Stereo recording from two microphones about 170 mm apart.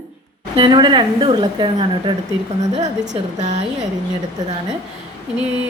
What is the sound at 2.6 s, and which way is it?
A woman's voice, 40° right (ahead or behind).